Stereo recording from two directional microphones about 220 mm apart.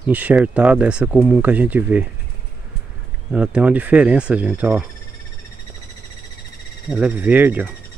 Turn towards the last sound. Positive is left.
turn(degrees=-10)  # may be behind; listen again after turning